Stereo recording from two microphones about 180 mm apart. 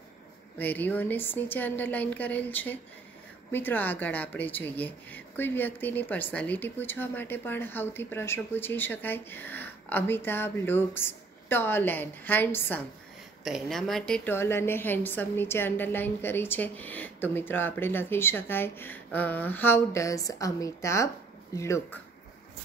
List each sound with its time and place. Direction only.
0.6 s a woman's voice: 10° left (ahead or behind)
13.4 s a woman's voice: centre (ahead or behind); by 22.0 s 15° left (ahead or behind)